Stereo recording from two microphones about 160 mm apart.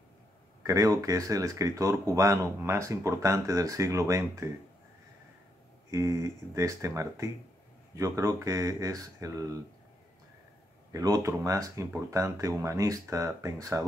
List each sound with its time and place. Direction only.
0.7 s speech: 20° right (ahead or behind)
5.9 s speech: 20° right (ahead or behind)
10.9 s speech: 20° right (ahead or behind)